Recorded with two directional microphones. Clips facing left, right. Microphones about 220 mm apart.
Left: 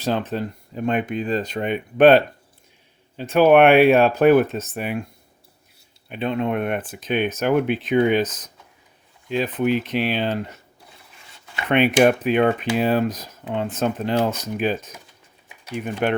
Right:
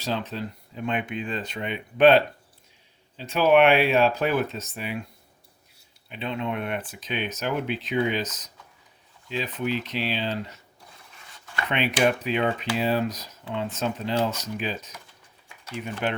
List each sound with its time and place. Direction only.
0.0 s speech: 50° left (ahead or behind)
6.1 s speech: 50° left (ahead or behind)
11.7 s speech: 50° left (ahead or behind)